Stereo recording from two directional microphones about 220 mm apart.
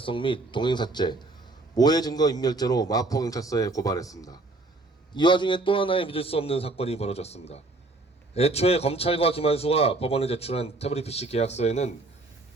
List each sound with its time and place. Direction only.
0.0 s a man's voice: 20° left (ahead or behind)